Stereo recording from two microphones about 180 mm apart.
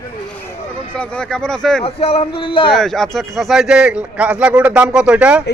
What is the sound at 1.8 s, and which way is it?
Speech, 35° left (ahead or behind).